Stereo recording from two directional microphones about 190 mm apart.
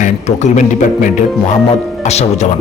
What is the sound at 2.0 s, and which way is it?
Speech, 35° left (ahead or behind).